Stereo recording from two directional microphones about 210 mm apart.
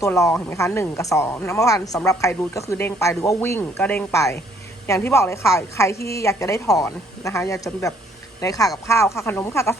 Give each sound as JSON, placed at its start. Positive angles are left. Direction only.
{"t": 0.0, "sound": "a woman's voice", "side_deg": 15}